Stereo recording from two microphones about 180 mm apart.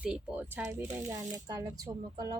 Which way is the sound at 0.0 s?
5° right (ahead or behind).